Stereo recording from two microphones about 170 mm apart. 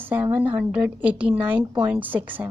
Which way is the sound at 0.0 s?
10° right (ahead or behind).